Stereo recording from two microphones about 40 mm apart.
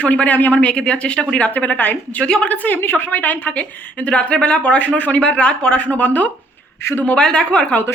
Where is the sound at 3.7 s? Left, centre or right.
Left.